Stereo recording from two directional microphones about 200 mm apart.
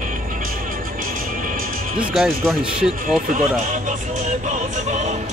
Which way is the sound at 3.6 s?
40° right (ahead or behind).